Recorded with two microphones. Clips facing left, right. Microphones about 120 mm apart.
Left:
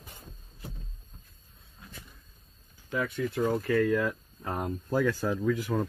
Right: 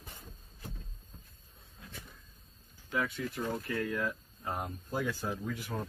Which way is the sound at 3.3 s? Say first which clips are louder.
Left 12 dB; 85° left.